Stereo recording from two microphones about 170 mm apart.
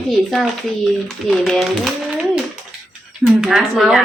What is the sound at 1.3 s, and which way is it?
Speech, centre (ahead or behind).